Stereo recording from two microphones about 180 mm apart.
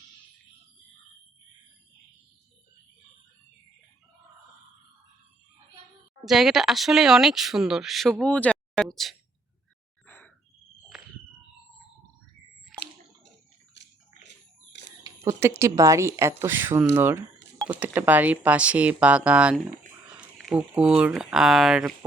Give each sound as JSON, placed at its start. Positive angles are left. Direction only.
{"t": 6.2, "sound": "speech", "side_deg": 0}
{"t": 10.1, "sound": "cricket", "side_deg": 10}
{"t": 14.3, "sound": "a sound", "side_deg": 70}
{"t": 15.0, "sound": "speech", "side_deg": -15}